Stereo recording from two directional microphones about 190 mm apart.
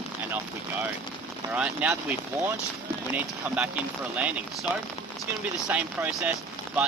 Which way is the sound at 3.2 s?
10° right (ahead or behind).